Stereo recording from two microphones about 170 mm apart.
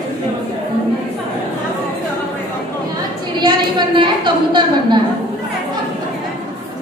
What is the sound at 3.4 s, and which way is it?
A woman's voice, 30° right (ahead or behind).